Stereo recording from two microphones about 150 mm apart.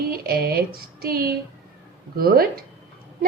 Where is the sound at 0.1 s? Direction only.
90° right.